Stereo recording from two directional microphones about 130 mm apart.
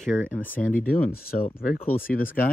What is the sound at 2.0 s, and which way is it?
Speech, 90° left.